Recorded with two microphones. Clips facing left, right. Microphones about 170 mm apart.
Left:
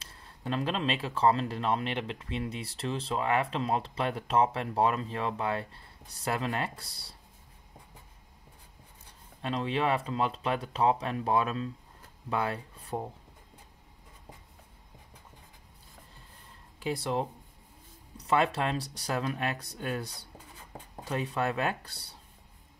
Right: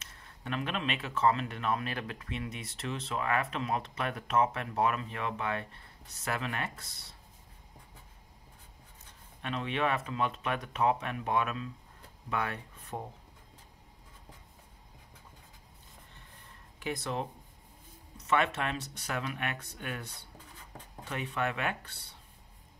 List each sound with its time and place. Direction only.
0.0 s speech: 30° left (ahead or behind)
9.4 s speech: 30° left (ahead or behind)
16.8 s speech: 30° left (ahead or behind)